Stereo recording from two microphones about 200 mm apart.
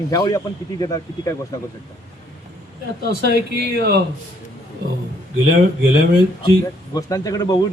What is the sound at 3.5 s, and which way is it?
Speech, 55° right (ahead or behind).